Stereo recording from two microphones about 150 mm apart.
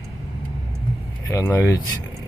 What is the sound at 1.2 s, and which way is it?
Speech, 20° left (ahead or behind).